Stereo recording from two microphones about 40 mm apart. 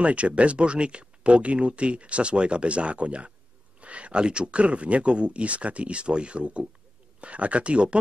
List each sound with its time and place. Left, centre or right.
0.0 s speech: right